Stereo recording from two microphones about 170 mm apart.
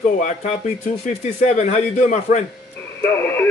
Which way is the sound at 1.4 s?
40° left (ahead or behind).